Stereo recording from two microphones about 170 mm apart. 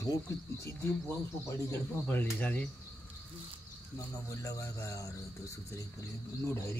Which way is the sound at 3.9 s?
20° left (ahead or behind).